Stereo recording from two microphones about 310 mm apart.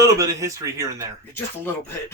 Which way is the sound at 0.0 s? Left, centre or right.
Centre.